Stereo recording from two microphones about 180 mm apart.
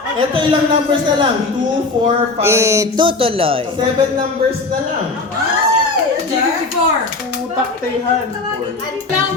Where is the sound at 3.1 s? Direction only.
30° right (ahead or behind).